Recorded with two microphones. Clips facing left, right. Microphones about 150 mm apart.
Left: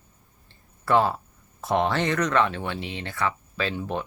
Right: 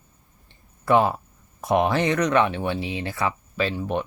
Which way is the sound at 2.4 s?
25° right (ahead or behind).